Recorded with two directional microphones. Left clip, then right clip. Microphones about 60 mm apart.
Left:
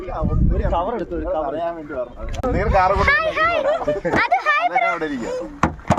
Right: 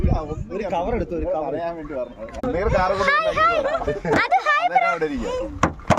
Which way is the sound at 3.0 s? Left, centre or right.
Right.